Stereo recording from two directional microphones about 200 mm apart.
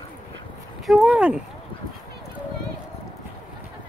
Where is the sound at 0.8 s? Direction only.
Centre (ahead or behind).